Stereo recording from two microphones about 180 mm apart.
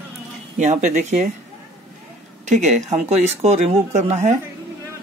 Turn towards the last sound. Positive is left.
turn(degrees=-40)  # may be behind; listen again after turning